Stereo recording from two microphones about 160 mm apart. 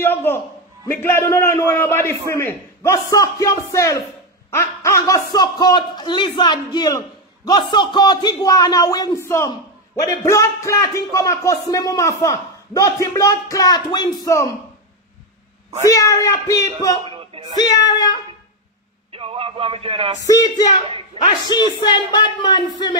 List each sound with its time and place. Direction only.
0.0 s a man's voice: 15° left (ahead or behind)
15.9 s a man's voice: 20° left (ahead or behind)
17.0 s a sound: 35° right (ahead or behind)
17.6 s a man's voice: 25° left (ahead or behind)
19.1 s speech: 35° right (ahead or behind)
20.2 s a man's voice: 25° left (ahead or behind)
21.2 s speech: 35° right (ahead or behind)
21.5 s a man's voice: 30° left (ahead or behind)